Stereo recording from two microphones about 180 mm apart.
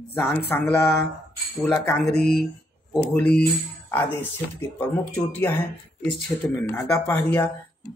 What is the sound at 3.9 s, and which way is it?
Speech, 10° left (ahead or behind).